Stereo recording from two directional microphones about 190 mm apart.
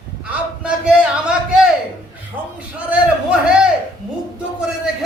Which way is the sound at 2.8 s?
5° right (ahead or behind).